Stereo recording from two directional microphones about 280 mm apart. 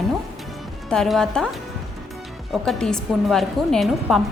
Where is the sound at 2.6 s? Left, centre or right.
Centre.